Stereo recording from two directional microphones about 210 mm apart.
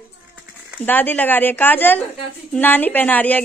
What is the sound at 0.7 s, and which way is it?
A woman's voice, 10° left (ahead or behind).